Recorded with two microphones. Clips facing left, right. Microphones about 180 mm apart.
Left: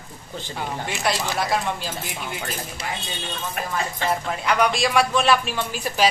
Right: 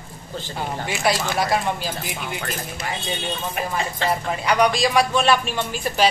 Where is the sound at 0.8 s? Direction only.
5° right (ahead or behind).